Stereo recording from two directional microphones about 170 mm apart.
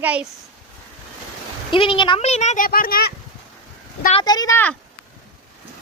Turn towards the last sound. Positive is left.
turn(degrees=15)  # may be behind; listen again after turning